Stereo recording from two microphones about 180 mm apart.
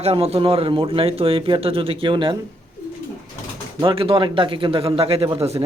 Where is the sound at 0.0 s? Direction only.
35° right (ahead or behind).